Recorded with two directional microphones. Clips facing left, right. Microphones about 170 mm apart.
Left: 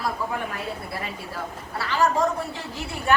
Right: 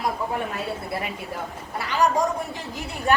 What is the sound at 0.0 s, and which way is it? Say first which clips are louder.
Speech: right 2 dB; 25° right (ahead or behind).